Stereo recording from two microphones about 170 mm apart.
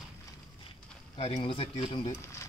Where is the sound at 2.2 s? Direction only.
15° left (ahead or behind).